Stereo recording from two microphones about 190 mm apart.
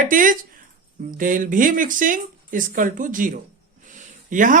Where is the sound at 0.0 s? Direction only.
45° right (ahead or behind).